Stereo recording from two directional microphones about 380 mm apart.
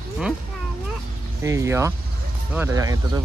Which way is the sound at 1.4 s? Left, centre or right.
Centre.